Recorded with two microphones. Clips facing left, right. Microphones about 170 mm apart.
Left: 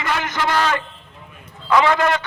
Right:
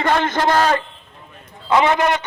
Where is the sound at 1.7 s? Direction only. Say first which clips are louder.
Right 1 dB; 20° right (ahead or behind).